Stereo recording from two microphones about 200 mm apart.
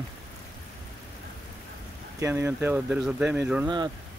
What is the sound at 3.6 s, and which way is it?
Speech, 20° right (ahead or behind).